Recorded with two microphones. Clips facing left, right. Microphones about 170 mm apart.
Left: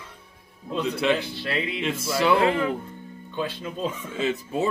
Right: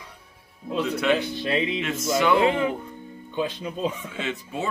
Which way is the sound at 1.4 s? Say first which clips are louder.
Right 4 dB; 20° right (ahead or behind).